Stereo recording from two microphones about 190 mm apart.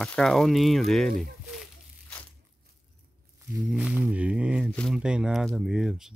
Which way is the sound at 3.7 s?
5° right (ahead or behind).